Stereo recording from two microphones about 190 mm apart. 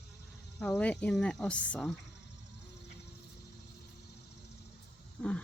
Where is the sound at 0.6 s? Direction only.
5° left (ahead or behind).